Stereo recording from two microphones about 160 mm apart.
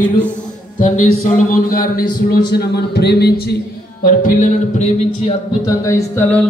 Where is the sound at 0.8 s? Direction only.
50° left (ahead or behind); by 3.6 s 90° left.